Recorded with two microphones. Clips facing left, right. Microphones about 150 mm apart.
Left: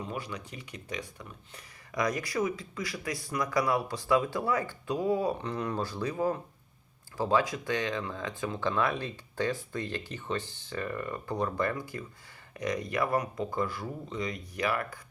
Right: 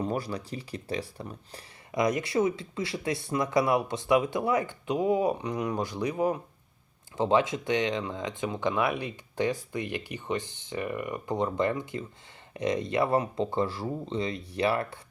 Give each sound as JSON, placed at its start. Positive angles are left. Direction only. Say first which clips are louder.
{"t": 0.0, "sound": "speech", "louder": "right 7 dB", "side_deg": -35}